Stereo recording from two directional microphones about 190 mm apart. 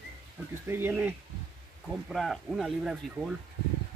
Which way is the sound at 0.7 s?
10° right (ahead or behind).